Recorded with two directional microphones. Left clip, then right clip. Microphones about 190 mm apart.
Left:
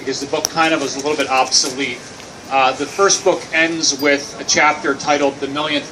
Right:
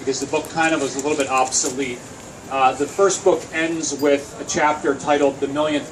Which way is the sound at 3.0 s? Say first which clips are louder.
Left 3 dB; 20° left (ahead or behind).